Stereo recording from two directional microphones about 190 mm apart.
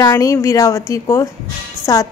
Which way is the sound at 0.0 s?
20° left (ahead or behind).